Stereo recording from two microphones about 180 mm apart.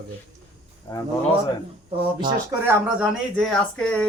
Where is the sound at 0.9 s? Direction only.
20° left (ahead or behind).